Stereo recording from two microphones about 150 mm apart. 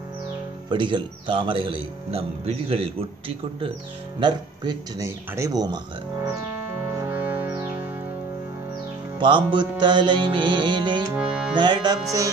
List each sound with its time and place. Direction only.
0.7 s a man's voice: 35° right (ahead or behind)
4.2 s speech: 30° right (ahead or behind)
7.0 s music: 10° right (ahead or behind)
9.2 s a man's voice: 35° right (ahead or behind)
11.1 s music: 5° right (ahead or behind)
11.5 s speech: 30° right (ahead or behind)